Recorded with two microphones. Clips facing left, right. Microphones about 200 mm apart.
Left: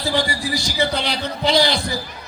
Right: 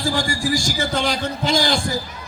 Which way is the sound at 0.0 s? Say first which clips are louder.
Even; 45° right (ahead or behind).